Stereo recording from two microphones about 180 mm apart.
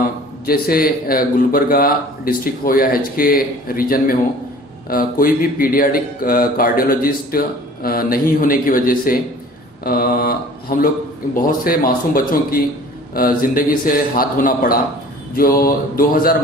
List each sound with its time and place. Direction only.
0.4 s speech: 55° left (ahead or behind)
9.8 s mantra: 55° left (ahead or behind)
11.3 s speech: 50° left (ahead or behind)